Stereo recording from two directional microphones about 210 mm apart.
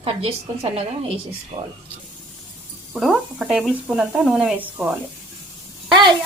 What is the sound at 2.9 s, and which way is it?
Speech, centre (ahead or behind).